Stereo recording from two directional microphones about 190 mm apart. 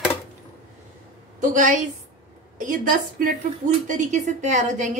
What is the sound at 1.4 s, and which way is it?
A woman's voice, 40° right (ahead or behind).